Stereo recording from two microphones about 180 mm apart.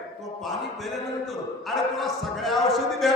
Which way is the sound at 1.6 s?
Centre (ahead or behind).